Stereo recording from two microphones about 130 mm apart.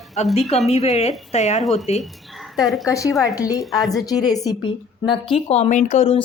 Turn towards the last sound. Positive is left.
turn(degrees=65)  # may be behind; listen again after turning